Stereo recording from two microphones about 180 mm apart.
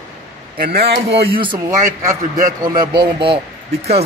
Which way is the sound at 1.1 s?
30° right (ahead or behind).